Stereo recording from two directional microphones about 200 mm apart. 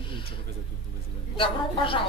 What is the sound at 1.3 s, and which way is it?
Speech, 25° left (ahead or behind).